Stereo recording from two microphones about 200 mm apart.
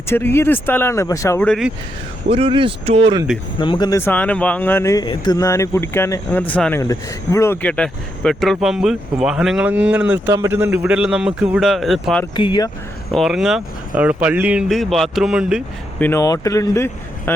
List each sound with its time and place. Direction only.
0.1 s speech: 10° left (ahead or behind)
2.3 s speech: 25° right (ahead or behind)
3.6 s speech: 25° left (ahead or behind); by 12.2 s centre (ahead or behind)
12.4 s speech: 20° left (ahead or behind)
13.1 s speech: centre (ahead or behind)
16.0 s speech: 10° left (ahead or behind)